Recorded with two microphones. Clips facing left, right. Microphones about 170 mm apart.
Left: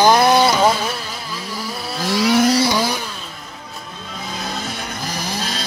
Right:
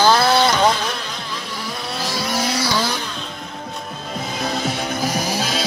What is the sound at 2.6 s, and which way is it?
Vehicle, 15° left (ahead or behind).